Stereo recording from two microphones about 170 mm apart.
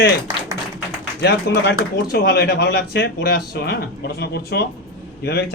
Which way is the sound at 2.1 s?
70° left (ahead or behind).